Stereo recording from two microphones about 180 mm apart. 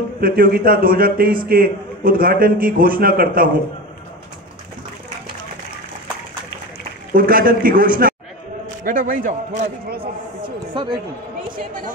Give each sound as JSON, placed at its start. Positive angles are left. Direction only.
{"t": 0.2, "sound": "a man's voice", "side_deg": -55}
{"t": 7.2, "sound": "a man's voice", "side_deg": -55}
{"t": 10.7, "sound": "speech", "side_deg": -25}